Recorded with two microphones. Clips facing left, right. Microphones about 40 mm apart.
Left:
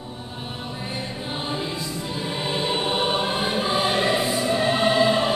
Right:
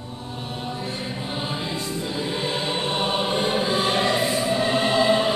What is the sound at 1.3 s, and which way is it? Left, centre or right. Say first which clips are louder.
Music: even; centre.